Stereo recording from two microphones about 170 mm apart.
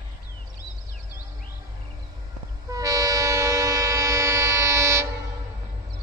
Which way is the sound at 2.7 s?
20° right (ahead or behind).